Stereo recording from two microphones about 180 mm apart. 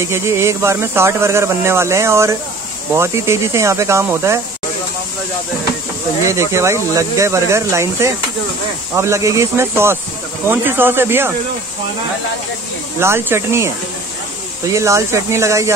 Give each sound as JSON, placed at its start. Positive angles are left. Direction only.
{"t": 0.0, "sound": "speech", "side_deg": -15}
{"t": 6.2, "sound": "speech", "side_deg": -15}
{"t": 13.0, "sound": "speech", "side_deg": -15}
{"t": 14.7, "sound": "speech", "side_deg": -15}